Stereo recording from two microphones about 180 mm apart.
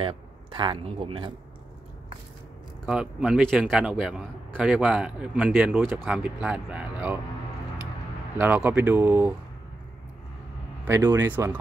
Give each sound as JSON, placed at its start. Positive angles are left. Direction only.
{"t": 0.0, "sound": "speech", "side_deg": -30}
{"t": 2.8, "sound": "a man's voice", "side_deg": -5}
{"t": 5.8, "sound": "a man's voice", "side_deg": 0}
{"t": 8.4, "sound": "speech", "side_deg": -10}
{"t": 10.9, "sound": "speech", "side_deg": -15}